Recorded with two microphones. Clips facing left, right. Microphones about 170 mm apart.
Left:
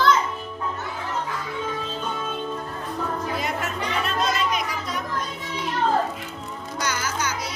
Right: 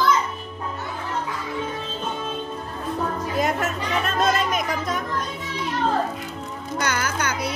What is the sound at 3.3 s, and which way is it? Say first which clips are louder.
Chatter: right 4 dB; 45° right (ahead or behind).